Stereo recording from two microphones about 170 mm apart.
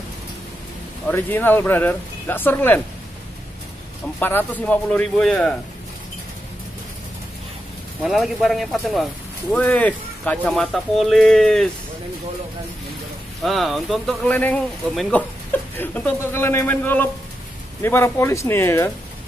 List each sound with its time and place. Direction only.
1.0 s speech: 10° left (ahead or behind)
4.2 s speech: 10° left (ahead or behind)
8.0 s speech: centre (ahead or behind)
13.4 s speech: centre (ahead or behind)